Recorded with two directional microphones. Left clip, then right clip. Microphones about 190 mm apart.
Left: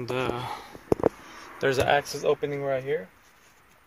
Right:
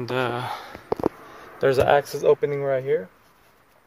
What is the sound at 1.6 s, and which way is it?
Speech, centre (ahead or behind).